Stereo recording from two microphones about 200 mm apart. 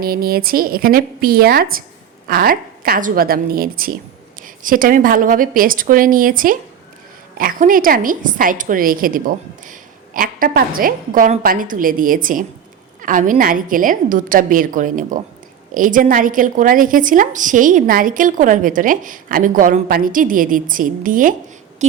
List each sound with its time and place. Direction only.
0.0 s a woman's voice: 50° right (ahead or behind)